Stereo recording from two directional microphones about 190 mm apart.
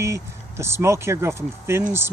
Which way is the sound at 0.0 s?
15° right (ahead or behind).